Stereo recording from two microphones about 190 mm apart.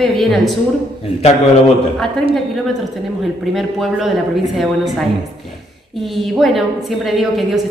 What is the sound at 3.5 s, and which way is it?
A woman's voice, centre (ahead or behind).